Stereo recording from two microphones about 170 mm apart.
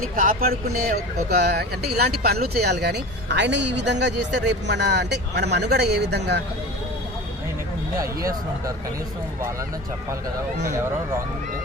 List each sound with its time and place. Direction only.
0.2 s speech: 55° right (ahead or behind); by 6.4 s 80° right
7.9 s speech: 20° right (ahead or behind)